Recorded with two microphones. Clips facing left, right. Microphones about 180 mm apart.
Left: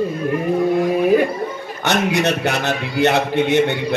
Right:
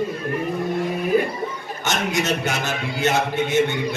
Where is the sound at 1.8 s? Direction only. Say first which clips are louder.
Left 5 dB; 65° left (ahead or behind).